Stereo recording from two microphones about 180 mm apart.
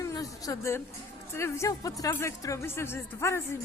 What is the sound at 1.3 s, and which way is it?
Speech, 15° left (ahead or behind).